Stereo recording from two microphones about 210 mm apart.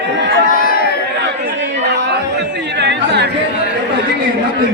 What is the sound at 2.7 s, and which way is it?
Chatter, 55° right (ahead or behind).